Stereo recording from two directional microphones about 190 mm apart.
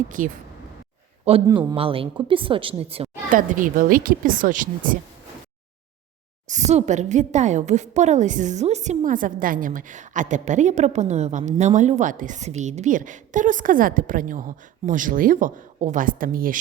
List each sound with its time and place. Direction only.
0.2 s speech: 45° right (ahead or behind)
1.5 s a woman's voice: 20° right (ahead or behind)
1.7 s a woman's voice: 30° right (ahead or behind)
3.3 s speech: 45° right (ahead or behind)
6.5 s a woman's voice: 35° right (ahead or behind)